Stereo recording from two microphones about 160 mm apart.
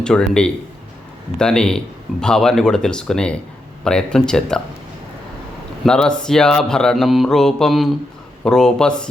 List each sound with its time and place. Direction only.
0.0 s mantra: 5° left (ahead or behind)
5.8 s mantra: 5° left (ahead or behind)